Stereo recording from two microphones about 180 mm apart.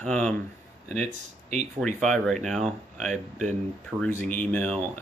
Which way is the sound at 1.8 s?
5° left (ahead or behind).